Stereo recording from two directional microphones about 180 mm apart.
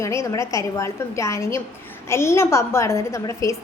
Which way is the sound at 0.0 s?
15° left (ahead or behind).